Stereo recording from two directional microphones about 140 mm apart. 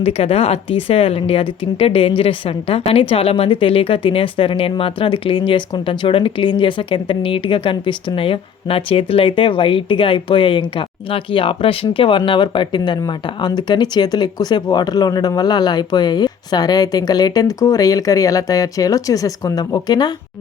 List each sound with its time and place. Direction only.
0.0 s a woman's voice: 45° left (ahead or behind); by 20.1 s 30° left (ahead or behind)